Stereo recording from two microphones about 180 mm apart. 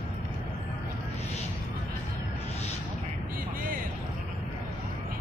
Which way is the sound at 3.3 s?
50° right (ahead or behind).